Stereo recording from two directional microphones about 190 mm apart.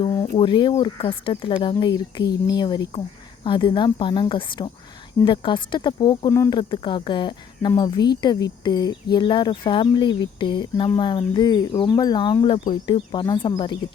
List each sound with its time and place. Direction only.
0.3 s speech: 25° left (ahead or behind)